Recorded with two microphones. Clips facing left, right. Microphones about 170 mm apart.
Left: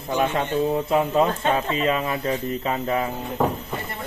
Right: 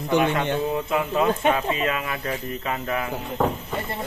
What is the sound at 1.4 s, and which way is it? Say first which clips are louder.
Speech: right 1 dB; 15° right (ahead or behind).